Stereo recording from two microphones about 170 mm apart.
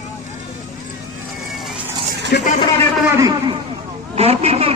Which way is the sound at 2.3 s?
70° left (ahead or behind).